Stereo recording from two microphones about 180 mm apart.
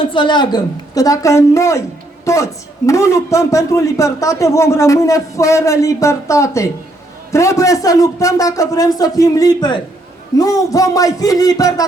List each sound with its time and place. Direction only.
0.1 s a man's voice: 25° left (ahead or behind)